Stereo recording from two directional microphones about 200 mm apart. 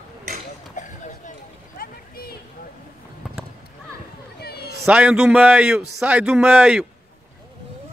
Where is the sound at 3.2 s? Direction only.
5° right (ahead or behind).